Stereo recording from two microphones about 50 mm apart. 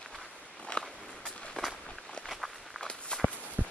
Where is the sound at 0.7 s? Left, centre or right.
Left.